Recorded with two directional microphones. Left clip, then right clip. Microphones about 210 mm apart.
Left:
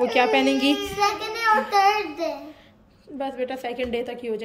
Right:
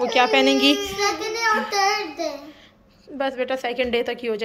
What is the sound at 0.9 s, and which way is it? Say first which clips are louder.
Child singing: even; 35° left (ahead or behind).